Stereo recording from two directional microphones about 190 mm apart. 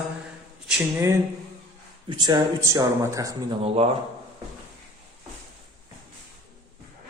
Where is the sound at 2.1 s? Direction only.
20° right (ahead or behind).